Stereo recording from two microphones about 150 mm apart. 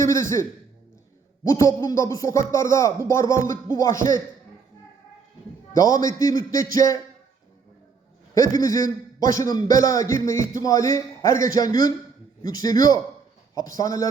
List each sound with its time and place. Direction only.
0.0 s speech: 20° left (ahead or behind)
1.5 s speech: 20° left (ahead or behind)
5.7 s speech: 20° left (ahead or behind)
8.4 s speech: 25° left (ahead or behind)